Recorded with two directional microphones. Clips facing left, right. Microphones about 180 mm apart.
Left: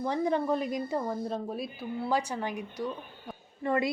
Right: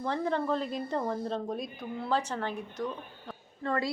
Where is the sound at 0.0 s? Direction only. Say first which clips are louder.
Left 2 dB; 15° left (ahead or behind).